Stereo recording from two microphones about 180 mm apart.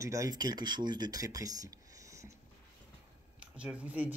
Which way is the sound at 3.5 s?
5° right (ahead or behind).